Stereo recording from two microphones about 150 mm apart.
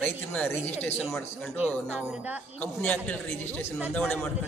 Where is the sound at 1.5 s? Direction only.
10° right (ahead or behind).